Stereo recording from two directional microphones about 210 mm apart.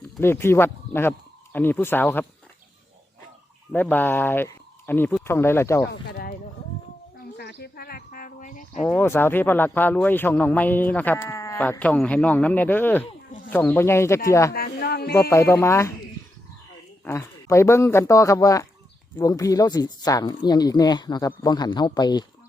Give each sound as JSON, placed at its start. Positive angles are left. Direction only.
{"t": 0.2, "sound": "speech", "side_deg": 10}
{"t": 3.7, "sound": "speech", "side_deg": 10}
{"t": 5.9, "sound": "speech", "side_deg": 45}
{"t": 7.3, "sound": "a sound", "side_deg": 50}
{"t": 8.8, "sound": "speech", "side_deg": 5}
{"t": 14.5, "sound": "a sound", "side_deg": 45}
{"t": 15.1, "sound": "speech", "side_deg": 15}
{"t": 17.0, "sound": "speech", "side_deg": 10}